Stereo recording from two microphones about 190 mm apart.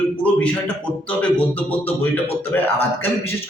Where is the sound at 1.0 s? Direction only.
5° left (ahead or behind).